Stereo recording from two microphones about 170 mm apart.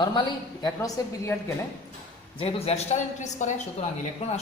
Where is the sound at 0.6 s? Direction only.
20° left (ahead or behind).